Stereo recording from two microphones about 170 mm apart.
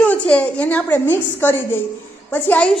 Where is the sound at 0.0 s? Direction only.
10° left (ahead or behind).